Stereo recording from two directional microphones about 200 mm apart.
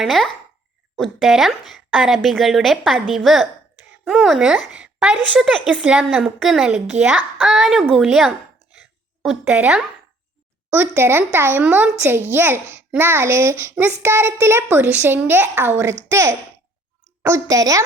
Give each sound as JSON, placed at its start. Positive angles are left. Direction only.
{"t": 0.0, "sound": "speech", "side_deg": 0}